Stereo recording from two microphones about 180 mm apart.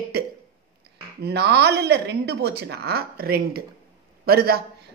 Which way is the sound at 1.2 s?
65° right (ahead or behind).